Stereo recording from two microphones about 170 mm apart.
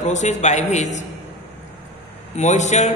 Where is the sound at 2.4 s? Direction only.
45° left (ahead or behind).